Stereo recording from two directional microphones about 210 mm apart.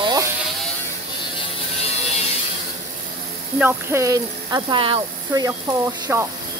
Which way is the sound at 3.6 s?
10° right (ahead or behind).